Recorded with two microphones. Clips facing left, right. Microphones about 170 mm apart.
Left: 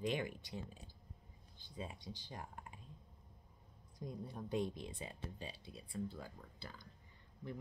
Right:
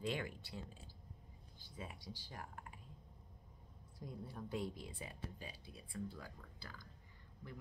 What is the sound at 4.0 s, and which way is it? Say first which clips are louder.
Speech: left 3 dB; 20° left (ahead or behind).